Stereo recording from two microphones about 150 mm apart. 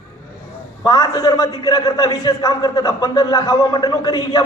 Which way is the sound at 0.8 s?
25° left (ahead or behind).